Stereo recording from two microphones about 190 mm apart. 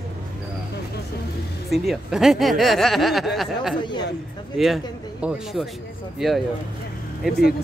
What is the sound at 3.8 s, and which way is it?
Speech, 25° left (ahead or behind).